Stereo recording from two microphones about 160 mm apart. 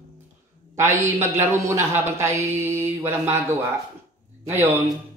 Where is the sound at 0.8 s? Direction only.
20° right (ahead or behind).